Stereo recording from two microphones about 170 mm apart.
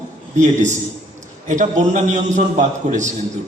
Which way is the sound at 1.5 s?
45° right (ahead or behind).